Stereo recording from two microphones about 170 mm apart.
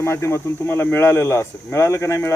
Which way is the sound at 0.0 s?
15° left (ahead or behind).